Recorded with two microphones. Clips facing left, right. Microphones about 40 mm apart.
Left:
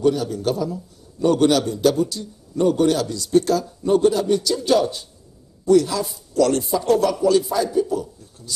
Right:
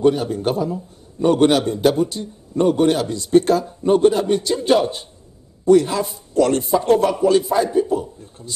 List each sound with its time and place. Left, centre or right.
0.0 s a man's voice: right